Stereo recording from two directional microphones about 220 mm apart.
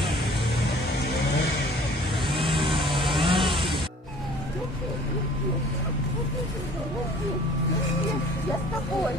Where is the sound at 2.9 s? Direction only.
25° right (ahead or behind).